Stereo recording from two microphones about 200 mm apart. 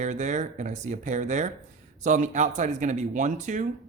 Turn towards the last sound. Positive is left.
turn(degrees=-35)  # may be behind; listen again after turning